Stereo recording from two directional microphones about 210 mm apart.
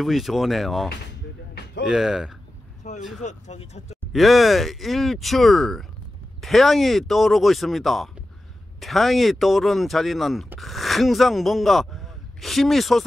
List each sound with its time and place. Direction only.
0.0 s speech: centre (ahead or behind)
1.9 s speech: centre (ahead or behind)
2.8 s speech: 35° left (ahead or behind)
4.1 s speech: centre (ahead or behind)